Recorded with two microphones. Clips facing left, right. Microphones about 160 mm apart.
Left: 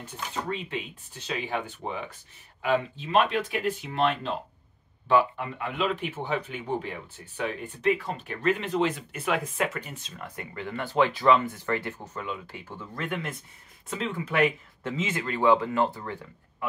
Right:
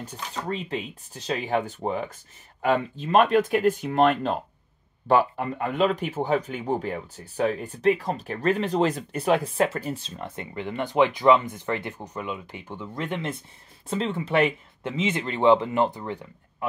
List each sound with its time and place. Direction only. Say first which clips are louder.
0.0 s speech: right 1 dB; 40° right (ahead or behind); by 16.6 s 20° right (ahead or behind)